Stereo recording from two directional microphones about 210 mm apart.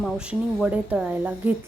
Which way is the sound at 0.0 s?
Centre (ahead or behind).